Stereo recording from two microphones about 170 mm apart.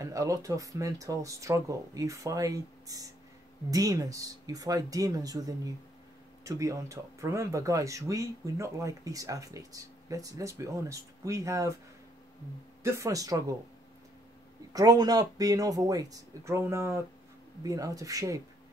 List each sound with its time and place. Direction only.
0.0 s speech: 20° right (ahead or behind)
12.8 s speech: 15° right (ahead or behind)
14.7 s speech: 20° right (ahead or behind)